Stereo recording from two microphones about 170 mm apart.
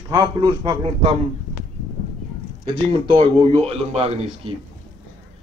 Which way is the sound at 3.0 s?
30° right (ahead or behind).